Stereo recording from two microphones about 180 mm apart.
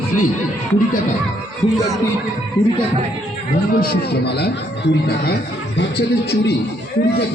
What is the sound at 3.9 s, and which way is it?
Speech, 65° left (ahead or behind).